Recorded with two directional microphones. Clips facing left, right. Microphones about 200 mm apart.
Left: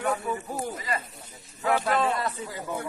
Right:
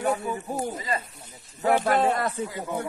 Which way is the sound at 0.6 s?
25° right (ahead or behind).